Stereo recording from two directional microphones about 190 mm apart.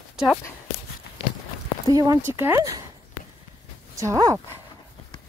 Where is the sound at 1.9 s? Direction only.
15° right (ahead or behind).